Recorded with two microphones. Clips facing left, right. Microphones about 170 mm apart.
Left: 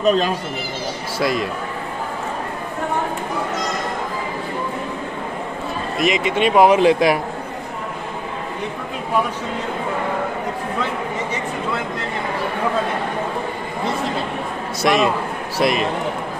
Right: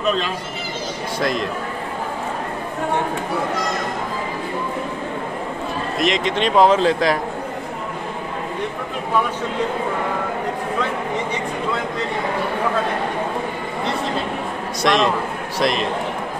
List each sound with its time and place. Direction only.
0.0 s speech: 40° left (ahead or behind)
1.2 s a man's voice: 5° left (ahead or behind)
5.9 s speech: 5° left (ahead or behind)
14.8 s a man's voice: 5° left (ahead or behind)